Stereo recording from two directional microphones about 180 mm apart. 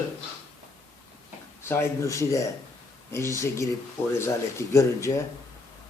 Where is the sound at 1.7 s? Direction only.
15° left (ahead or behind).